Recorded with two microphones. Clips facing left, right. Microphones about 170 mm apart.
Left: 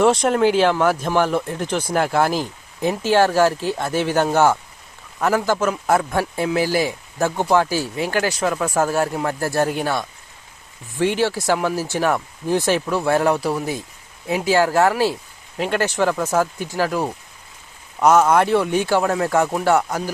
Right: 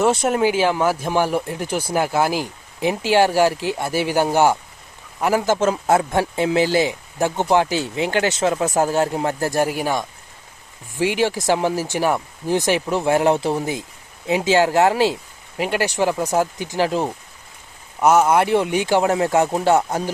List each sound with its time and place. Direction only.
0.0 s speech: 5° right (ahead or behind)
18.0 s speech: 10° right (ahead or behind)